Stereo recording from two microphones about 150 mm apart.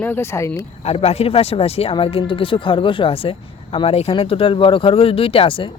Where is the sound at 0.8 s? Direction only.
45° left (ahead or behind).